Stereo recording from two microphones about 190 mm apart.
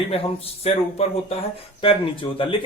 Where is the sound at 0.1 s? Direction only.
30° left (ahead or behind).